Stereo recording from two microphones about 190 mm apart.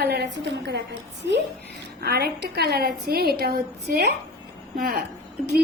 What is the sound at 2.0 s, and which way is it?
A woman's voice, 55° right (ahead or behind).